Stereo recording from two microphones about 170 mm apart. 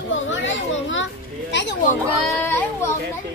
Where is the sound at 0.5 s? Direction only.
90° left.